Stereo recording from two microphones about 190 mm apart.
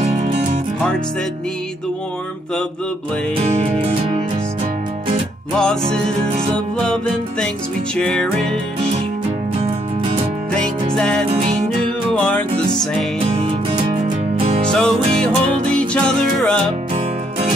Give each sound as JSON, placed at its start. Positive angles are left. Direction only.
{"t": 3.4, "sound": "music", "side_deg": -35}
{"t": 5.6, "sound": "music", "side_deg": 5}
{"t": 11.0, "sound": "music", "side_deg": 5}
{"t": 13.4, "sound": "music", "side_deg": -25}
{"t": 14.7, "sound": "music", "side_deg": 5}